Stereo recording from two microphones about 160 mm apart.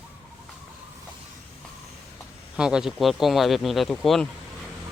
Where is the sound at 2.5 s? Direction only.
5° right (ahead or behind).